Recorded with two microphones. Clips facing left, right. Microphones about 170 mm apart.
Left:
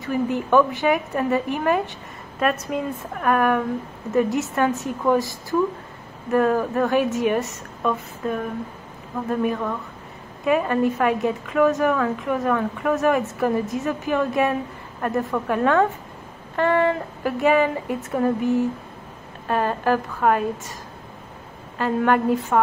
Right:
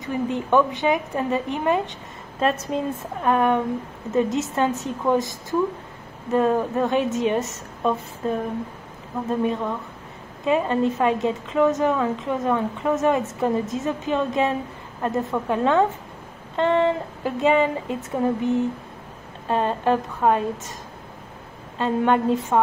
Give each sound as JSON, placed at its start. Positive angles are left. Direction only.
{"t": 0.0, "sound": "a woman's voice", "side_deg": -20}
{"t": 21.7, "sound": "a woman's voice", "side_deg": -20}